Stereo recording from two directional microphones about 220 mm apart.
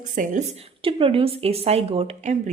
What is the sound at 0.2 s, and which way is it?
Speech, 30° right (ahead or behind).